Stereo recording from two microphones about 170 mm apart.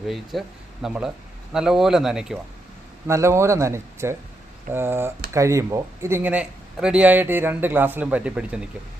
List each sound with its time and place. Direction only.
0.1 s speech: centre (ahead or behind)
3.1 s speech: 15° right (ahead or behind)